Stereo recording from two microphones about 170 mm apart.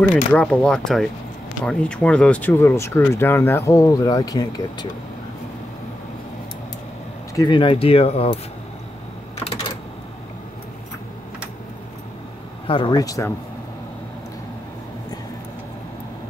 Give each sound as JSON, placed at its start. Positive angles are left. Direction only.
{"t": 0.0, "sound": "speech", "side_deg": 10}
{"t": 7.3, "sound": "speech", "side_deg": 30}
{"t": 12.6, "sound": "speech", "side_deg": 30}